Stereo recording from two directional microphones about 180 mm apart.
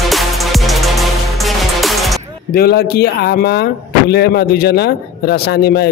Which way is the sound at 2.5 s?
60° left (ahead or behind).